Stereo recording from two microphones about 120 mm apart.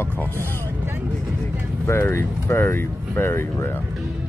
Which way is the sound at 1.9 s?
20° left (ahead or behind).